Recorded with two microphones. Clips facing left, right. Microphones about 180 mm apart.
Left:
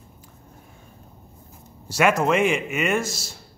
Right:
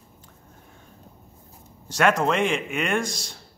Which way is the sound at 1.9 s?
10° left (ahead or behind).